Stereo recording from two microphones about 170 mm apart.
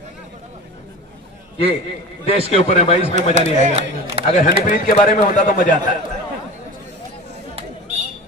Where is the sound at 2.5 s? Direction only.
35° left (ahead or behind).